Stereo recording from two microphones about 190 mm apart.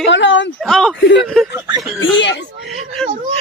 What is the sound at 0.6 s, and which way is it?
Speech, centre (ahead or behind).